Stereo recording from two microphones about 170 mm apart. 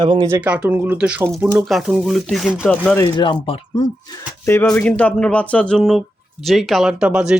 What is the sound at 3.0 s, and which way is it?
Speech, 30° left (ahead or behind).